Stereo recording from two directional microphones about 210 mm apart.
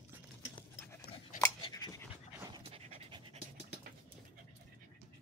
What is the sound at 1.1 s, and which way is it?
Dog, 50° left (ahead or behind).